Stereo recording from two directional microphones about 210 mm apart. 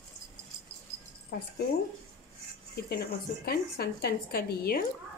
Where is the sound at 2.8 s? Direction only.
50° left (ahead or behind).